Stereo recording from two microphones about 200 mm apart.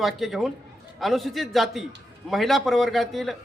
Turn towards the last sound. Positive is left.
turn(degrees=0)  # may be behind; listen again after turning